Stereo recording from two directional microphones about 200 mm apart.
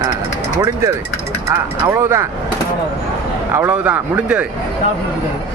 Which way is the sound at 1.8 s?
15° right (ahead or behind).